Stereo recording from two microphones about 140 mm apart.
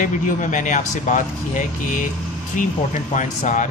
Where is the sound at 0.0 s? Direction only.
65° left (ahead or behind).